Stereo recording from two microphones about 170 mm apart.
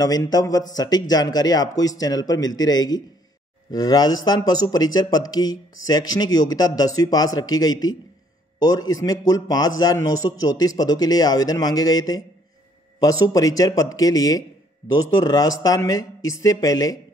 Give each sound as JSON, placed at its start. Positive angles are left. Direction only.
{"t": 0.0, "sound": "a man's voice", "side_deg": 20}